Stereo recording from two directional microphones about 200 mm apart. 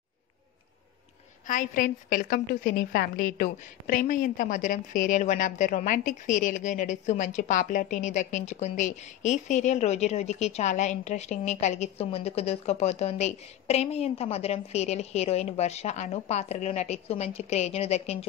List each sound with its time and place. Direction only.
1.5 s a woman's voice: 40° left (ahead or behind)